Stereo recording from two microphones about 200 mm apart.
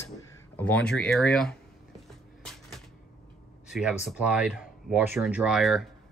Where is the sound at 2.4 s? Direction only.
Centre (ahead or behind).